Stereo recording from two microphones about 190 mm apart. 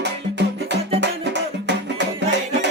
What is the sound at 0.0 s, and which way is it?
Music, 65° right (ahead or behind).